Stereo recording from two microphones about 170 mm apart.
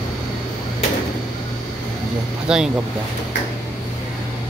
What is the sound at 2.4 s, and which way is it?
Speech, 5° right (ahead or behind).